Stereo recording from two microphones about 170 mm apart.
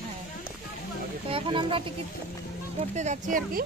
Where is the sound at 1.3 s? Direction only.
30° right (ahead or behind).